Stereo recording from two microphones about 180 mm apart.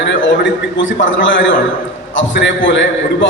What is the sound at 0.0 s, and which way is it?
A man's voice, 90° left.